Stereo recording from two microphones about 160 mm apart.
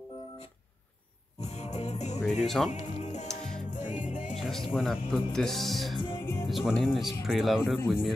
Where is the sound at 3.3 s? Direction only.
5° left (ahead or behind).